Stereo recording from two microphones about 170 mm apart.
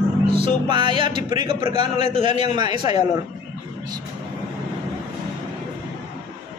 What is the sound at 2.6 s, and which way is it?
Speech, 25° right (ahead or behind).